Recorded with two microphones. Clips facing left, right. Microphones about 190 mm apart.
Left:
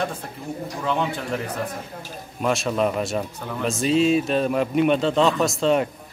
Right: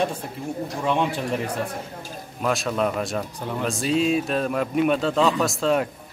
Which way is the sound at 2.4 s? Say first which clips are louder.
Left 2 dB; centre (ahead or behind).